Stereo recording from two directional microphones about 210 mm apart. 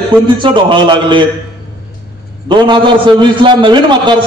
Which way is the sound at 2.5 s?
20° right (ahead or behind).